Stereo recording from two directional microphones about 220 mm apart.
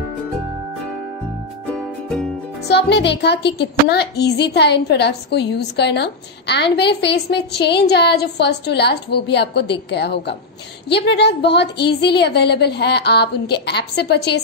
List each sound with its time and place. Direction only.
2.7 s speech: 50° left (ahead or behind)